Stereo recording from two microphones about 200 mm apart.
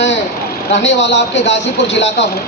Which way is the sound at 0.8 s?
65° left (ahead or behind).